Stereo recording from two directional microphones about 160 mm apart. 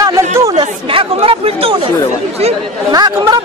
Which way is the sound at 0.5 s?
35° right (ahead or behind).